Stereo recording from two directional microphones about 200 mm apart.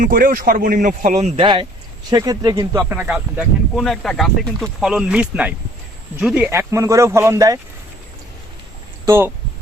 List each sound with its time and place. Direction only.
0.0 s speech: 45° right (ahead or behind); by 7.6 s 15° right (ahead or behind)
9.0 s speech: 10° right (ahead or behind)